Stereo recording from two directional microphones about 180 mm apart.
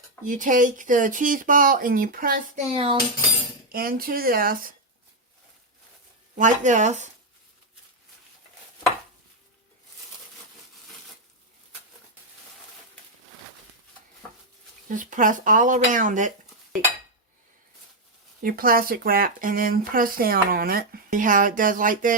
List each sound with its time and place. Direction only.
0.3 s speech: 45° right (ahead or behind)
2.7 s cutlery: 30° right (ahead or behind)
3.7 s speech: 55° right (ahead or behind)
6.3 s speech: 45° right (ahead or behind)
14.8 s speech: 45° right (ahead or behind)
18.4 s speech: 55° right (ahead or behind)